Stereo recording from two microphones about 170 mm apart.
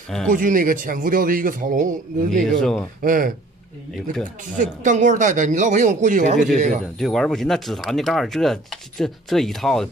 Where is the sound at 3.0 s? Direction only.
55° right (ahead or behind).